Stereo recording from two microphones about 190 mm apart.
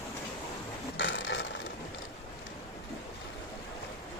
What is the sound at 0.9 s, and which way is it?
Mechanisms, 70° left (ahead or behind).